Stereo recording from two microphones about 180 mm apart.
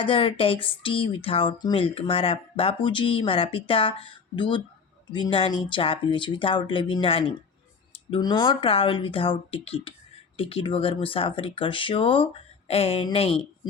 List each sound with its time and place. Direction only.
0.0 s speech: 30° left (ahead or behind)